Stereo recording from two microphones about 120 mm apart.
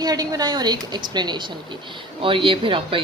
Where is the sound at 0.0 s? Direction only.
35° right (ahead or behind).